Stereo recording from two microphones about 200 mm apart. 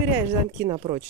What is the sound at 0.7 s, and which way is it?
Speech, 25° right (ahead or behind).